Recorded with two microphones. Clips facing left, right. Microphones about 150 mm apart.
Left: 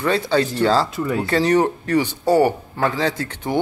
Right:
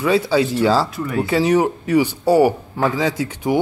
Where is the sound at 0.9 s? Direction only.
30° left (ahead or behind).